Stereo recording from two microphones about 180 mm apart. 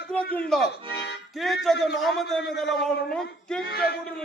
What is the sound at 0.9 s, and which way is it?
Music, 70° left (ahead or behind).